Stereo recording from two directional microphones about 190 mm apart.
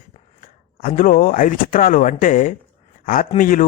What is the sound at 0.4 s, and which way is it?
Speech, 45° left (ahead or behind).